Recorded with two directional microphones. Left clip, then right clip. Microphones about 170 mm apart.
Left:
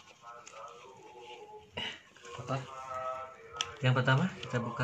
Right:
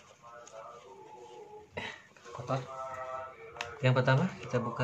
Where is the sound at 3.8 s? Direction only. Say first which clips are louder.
Right 2 dB; 10° left (ahead or behind).